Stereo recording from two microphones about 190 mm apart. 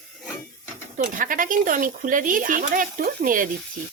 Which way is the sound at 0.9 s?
45° right (ahead or behind).